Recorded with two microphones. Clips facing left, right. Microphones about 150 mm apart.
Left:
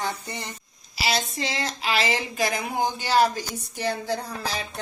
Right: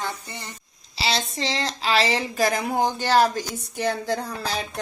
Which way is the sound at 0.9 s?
30° right (ahead or behind).